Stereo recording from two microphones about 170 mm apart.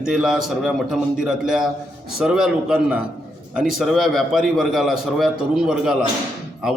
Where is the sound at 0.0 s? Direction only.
5° right (ahead or behind).